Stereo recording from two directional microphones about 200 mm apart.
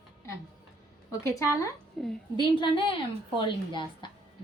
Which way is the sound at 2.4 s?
25° left (ahead or behind).